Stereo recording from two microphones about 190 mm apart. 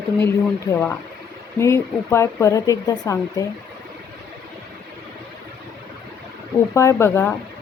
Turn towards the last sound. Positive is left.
turn(degrees=15)  # may be behind; listen again after turning